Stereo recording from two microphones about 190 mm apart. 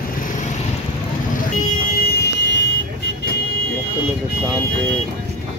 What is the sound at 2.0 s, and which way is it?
Music, 55° left (ahead or behind).